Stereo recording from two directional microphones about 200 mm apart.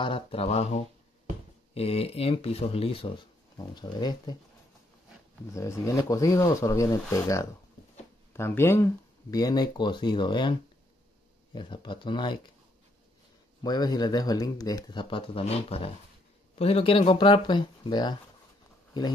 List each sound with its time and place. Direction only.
0.0 s speech: 25° left (ahead or behind)
5.5 s speech: 15° left (ahead or behind)
13.6 s speech: 20° left (ahead or behind)